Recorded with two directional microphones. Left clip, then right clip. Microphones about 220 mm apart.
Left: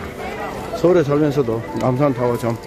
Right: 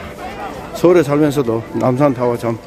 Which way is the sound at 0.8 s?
35° right (ahead or behind).